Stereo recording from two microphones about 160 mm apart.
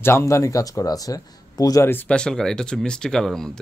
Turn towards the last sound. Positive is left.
turn(degrees=5)  # may be behind; listen again after turning